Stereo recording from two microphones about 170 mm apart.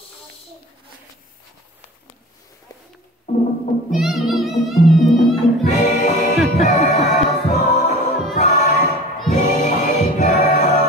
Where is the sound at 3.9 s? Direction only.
Centre (ahead or behind).